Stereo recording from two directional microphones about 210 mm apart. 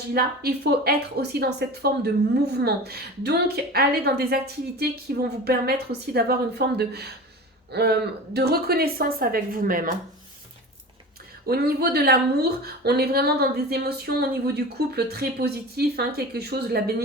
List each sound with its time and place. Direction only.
0.1 s a woman's voice: 50° right (ahead or behind)
11.4 s a woman's voice: 45° right (ahead or behind)